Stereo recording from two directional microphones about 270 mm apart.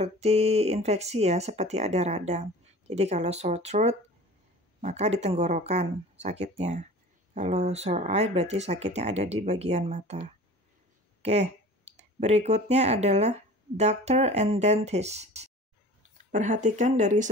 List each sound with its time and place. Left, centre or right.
0.0 s speech: right